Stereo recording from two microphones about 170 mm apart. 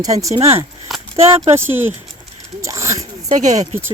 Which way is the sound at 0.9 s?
Centre (ahead or behind).